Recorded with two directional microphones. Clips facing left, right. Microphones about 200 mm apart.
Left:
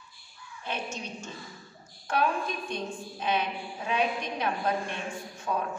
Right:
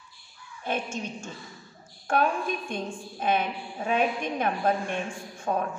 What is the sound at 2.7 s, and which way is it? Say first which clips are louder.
A woman's voice: right 1 dB; 50° right (ahead or behind).